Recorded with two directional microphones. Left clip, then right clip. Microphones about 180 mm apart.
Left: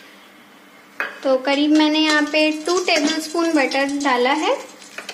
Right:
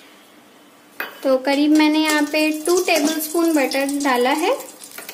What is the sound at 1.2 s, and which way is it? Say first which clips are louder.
A child's voice: right 1 dB; 35° right (ahead or behind).